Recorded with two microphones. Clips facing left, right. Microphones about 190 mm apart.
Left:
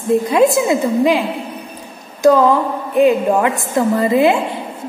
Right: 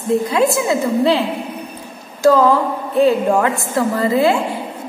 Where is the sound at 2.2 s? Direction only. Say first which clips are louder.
Left 1 dB; 20° left (ahead or behind).